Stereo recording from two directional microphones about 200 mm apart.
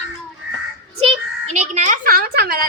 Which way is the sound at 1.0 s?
30° right (ahead or behind).